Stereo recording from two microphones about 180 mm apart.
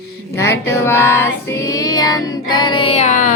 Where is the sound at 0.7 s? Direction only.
15° left (ahead or behind).